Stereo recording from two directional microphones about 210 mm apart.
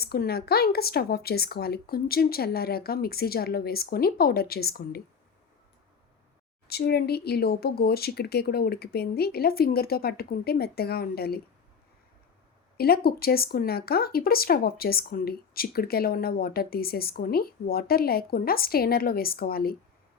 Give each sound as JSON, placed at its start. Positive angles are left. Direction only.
{"t": 0.0, "sound": "speech", "side_deg": 45}
{"t": 6.7, "sound": "speech", "side_deg": 50}
{"t": 12.7, "sound": "speech", "side_deg": 45}